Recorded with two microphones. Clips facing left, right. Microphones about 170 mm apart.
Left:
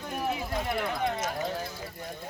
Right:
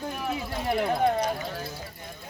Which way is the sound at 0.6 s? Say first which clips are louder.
Right 9 dB; 25° right (ahead or behind).